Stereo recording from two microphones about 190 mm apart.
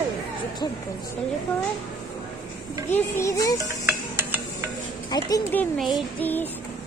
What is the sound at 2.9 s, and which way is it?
Child singing, 15° left (ahead or behind).